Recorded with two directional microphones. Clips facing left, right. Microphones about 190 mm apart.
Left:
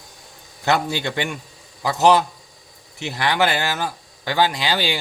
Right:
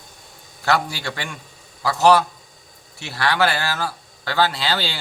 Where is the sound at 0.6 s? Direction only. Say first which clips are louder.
Left 1 dB; 20° left (ahead or behind).